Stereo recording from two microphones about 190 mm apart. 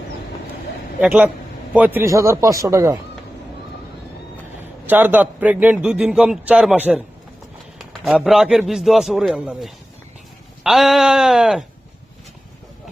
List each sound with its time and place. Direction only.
0.9 s a man's voice: 10° right (ahead or behind)
4.9 s a man's voice: 10° right (ahead or behind)